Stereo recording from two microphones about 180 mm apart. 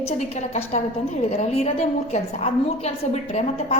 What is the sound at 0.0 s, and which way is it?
A woman's voice, 40° left (ahead or behind).